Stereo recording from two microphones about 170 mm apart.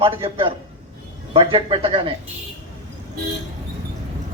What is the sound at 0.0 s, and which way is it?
A man's voice, 30° right (ahead or behind).